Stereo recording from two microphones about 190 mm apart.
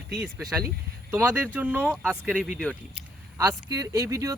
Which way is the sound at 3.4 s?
20° right (ahead or behind).